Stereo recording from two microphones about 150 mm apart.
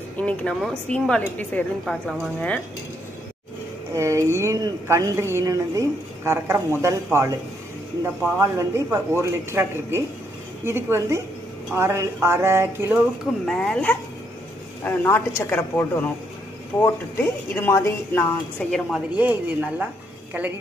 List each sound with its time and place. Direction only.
0.2 s speech: 5° left (ahead or behind)
1.9 s speech: centre (ahead or behind)
3.9 s speech: 20° right (ahead or behind)
8.0 s a sound: 15° right (ahead or behind)
13.5 s speech: 5° left (ahead or behind)
18.7 s a sound: 5° right (ahead or behind)